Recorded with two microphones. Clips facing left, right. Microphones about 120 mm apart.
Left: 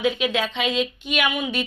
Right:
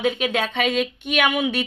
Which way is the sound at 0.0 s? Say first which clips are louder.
Even; 50° right (ahead or behind).